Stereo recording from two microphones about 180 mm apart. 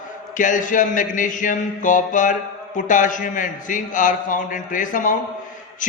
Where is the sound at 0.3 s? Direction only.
45° left (ahead or behind).